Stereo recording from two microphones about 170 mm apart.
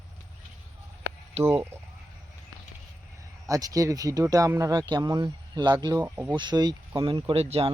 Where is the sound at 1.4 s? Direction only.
15° right (ahead or behind).